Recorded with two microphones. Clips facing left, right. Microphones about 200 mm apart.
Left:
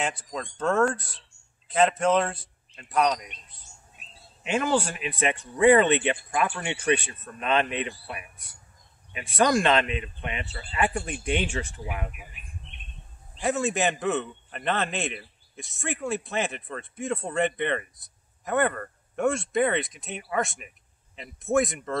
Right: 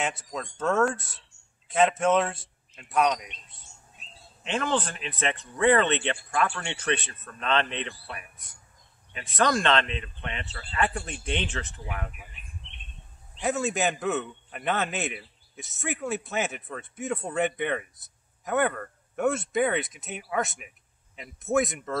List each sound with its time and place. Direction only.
0.3 s a man's voice: centre (ahead or behind)
4.4 s speech: 10° left (ahead or behind)
13.4 s a man's voice: centre (ahead or behind)